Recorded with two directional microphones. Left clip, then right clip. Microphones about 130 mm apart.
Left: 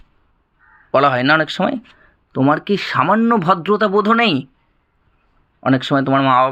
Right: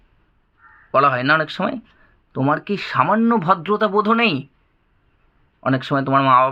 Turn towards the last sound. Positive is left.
turn(degrees=25)  # may be behind; listen again after turning